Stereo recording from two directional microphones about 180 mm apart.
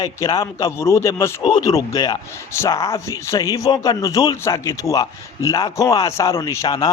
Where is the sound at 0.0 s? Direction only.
20° left (ahead or behind).